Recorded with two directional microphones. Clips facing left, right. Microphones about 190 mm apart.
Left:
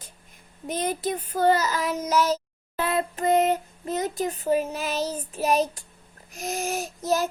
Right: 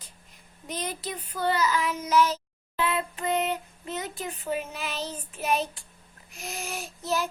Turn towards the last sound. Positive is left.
turn(degrees=40)  # may be behind; listen again after turning